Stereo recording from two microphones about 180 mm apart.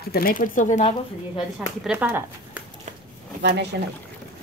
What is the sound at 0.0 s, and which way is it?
Speech, 55° left (ahead or behind).